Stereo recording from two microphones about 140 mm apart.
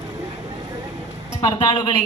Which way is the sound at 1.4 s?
35° left (ahead or behind).